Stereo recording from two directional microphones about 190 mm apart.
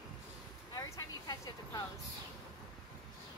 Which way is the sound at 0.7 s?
15° left (ahead or behind).